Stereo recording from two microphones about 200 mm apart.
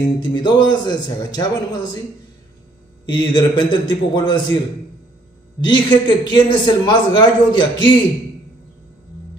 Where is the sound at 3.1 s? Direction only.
25° left (ahead or behind).